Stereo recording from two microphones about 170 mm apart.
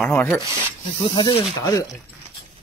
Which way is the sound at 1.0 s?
25° left (ahead or behind).